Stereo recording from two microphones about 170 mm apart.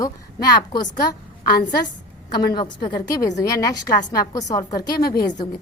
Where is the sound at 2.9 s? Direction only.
25° left (ahead or behind).